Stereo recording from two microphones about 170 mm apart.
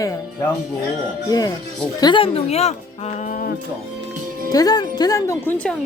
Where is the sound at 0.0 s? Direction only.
20° left (ahead or behind); by 3.5 s 50° left (ahead or behind).